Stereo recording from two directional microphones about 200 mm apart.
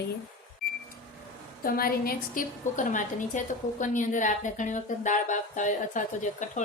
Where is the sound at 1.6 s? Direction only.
45° left (ahead or behind).